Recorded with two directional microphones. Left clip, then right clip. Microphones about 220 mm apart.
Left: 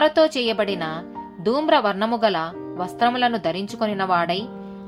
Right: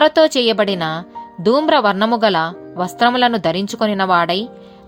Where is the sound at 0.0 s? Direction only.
40° right (ahead or behind).